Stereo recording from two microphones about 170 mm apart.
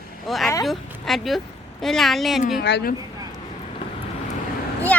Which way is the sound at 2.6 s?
70° left (ahead or behind).